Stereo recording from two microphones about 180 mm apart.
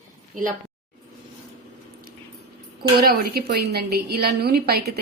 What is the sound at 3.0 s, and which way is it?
A woman's voice, 55° right (ahead or behind).